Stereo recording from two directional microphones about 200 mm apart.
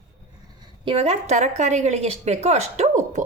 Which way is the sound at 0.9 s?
30° right (ahead or behind).